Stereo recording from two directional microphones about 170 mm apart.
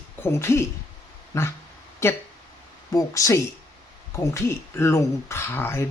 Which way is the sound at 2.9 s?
20° left (ahead or behind).